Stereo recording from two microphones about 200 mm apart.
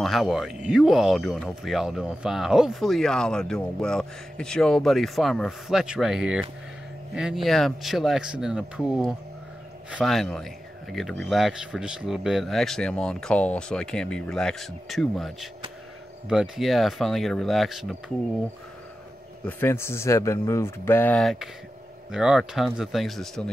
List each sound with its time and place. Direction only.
0.0 s speech: centre (ahead or behind)
19.4 s speech: 10° left (ahead or behind)